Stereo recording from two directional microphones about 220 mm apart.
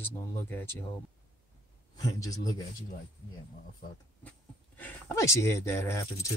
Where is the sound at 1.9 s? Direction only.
15° left (ahead or behind).